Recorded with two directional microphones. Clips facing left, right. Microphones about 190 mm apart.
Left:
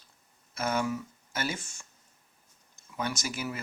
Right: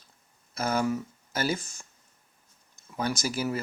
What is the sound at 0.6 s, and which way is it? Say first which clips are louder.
Speech: right 3 dB; 40° right (ahead or behind).